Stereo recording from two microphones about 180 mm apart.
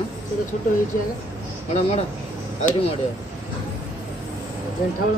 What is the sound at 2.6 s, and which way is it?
Speech, 35° left (ahead or behind).